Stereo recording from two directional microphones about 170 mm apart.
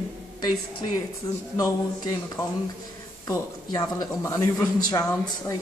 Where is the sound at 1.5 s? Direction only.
20° left (ahead or behind).